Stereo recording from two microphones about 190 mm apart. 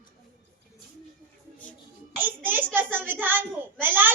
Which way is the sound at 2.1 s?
10° right (ahead or behind).